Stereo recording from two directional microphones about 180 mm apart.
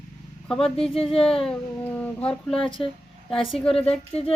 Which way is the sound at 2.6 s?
30° left (ahead or behind).